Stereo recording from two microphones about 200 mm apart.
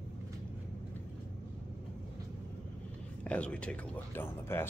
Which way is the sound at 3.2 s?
5° left (ahead or behind).